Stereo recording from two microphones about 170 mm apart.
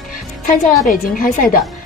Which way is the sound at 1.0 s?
55° left (ahead or behind).